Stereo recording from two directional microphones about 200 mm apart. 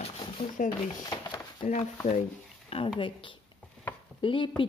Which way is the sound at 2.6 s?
30° left (ahead or behind).